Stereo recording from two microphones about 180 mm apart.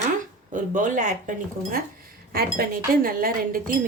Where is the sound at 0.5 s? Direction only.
45° right (ahead or behind).